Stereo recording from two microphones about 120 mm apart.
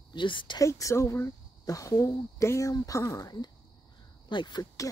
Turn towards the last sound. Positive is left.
turn(degrees=35)  # may be behind; listen again after turning